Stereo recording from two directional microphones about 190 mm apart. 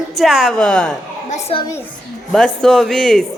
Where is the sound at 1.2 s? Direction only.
35° left (ahead or behind).